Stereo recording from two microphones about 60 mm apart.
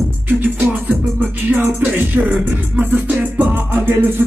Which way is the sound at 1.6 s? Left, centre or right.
Right.